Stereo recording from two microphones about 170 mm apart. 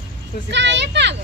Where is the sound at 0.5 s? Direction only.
90° right.